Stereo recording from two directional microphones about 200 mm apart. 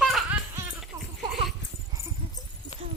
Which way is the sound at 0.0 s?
5° right (ahead or behind).